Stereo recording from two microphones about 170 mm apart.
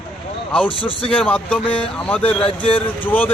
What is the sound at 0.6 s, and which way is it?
Speech, 30° left (ahead or behind).